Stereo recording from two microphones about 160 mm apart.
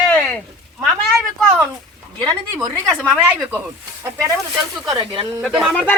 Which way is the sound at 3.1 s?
10° right (ahead or behind).